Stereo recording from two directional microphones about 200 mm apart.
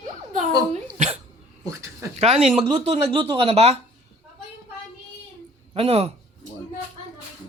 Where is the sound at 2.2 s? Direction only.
35° right (ahead or behind).